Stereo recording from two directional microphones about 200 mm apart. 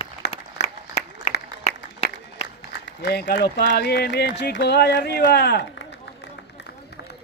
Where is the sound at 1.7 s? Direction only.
35° left (ahead or behind).